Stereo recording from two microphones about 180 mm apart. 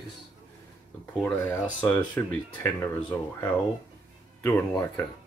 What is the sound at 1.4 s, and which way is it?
Speech, 15° left (ahead or behind).